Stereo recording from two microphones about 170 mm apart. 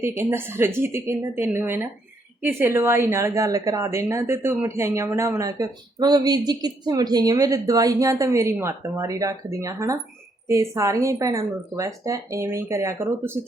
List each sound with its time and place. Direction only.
0.2 s a woman's voice: 15° right (ahead or behind)